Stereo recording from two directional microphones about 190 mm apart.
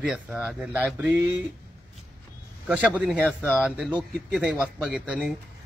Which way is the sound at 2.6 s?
5° right (ahead or behind).